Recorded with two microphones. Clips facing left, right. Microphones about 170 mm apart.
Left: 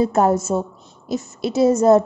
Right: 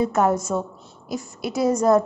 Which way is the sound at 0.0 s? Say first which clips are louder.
Left 3 dB; 30° left (ahead or behind).